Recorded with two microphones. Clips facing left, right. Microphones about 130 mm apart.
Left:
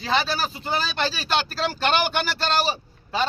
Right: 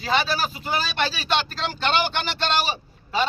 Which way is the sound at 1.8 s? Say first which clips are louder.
Even; 45° left (ahead or behind).